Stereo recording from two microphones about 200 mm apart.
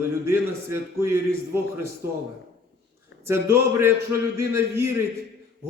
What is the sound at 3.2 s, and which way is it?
A man's voice, 10° right (ahead or behind).